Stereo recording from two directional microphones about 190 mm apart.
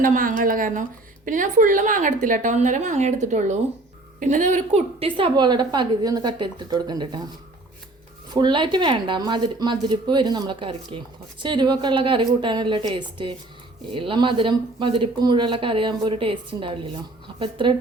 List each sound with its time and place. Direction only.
0.0 s a woman's voice: 45° right (ahead or behind); by 7.2 s 20° right (ahead or behind)
8.3 s speech: 25° right (ahead or behind)